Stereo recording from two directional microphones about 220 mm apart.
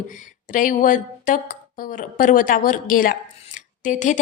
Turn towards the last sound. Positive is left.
turn(degrees=35)  # may be behind; listen again after turning